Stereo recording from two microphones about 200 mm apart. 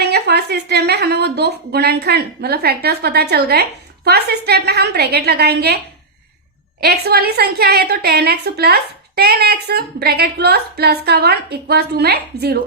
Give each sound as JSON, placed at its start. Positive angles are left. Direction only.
{"t": 0.0, "sound": "speech", "side_deg": -55}
{"t": 6.8, "sound": "speech", "side_deg": -55}